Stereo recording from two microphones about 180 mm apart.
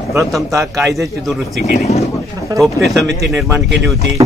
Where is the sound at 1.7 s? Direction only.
40° left (ahead or behind).